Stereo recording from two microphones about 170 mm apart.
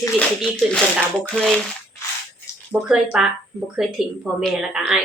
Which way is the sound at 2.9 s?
5° right (ahead or behind).